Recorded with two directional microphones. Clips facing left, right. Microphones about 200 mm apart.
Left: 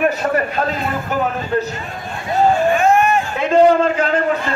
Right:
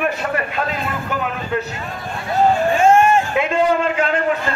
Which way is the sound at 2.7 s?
25° right (ahead or behind).